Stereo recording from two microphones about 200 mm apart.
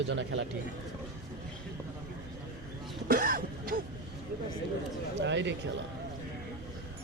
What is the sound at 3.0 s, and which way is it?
Throat clearing, 45° right (ahead or behind).